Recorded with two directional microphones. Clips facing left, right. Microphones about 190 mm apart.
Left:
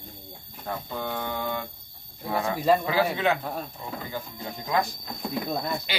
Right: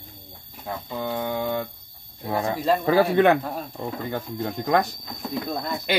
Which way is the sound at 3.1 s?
60° right (ahead or behind).